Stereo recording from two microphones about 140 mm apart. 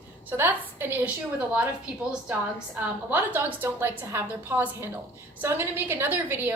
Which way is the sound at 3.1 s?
15° right (ahead or behind).